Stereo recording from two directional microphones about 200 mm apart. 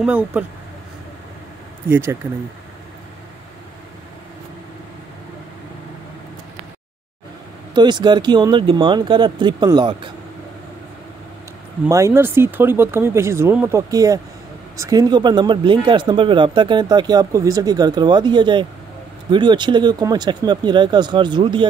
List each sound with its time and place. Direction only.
0.0 s speech: 5° right (ahead or behind)
1.9 s speech: 10° right (ahead or behind)
7.7 s speech: 20° right (ahead or behind)
11.9 s speech: 15° right (ahead or behind)